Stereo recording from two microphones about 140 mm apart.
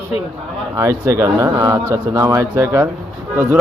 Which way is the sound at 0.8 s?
20° right (ahead or behind).